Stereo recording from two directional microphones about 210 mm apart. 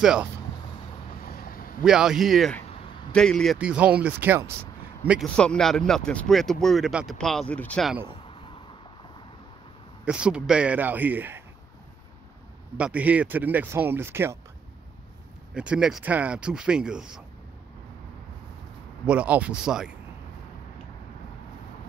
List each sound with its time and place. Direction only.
0.0 s speech: 5° right (ahead or behind)
1.2 s vehicle: 45° left (ahead or behind)
1.9 s speech: 5° right (ahead or behind)
5.3 s speech: 5° left (ahead or behind)
10.0 s speech: 5° right (ahead or behind)
12.7 s speech: 5° right (ahead or behind)
15.5 s speech: 5° right (ahead or behind)
19.0 s speech: 5° right (ahead or behind)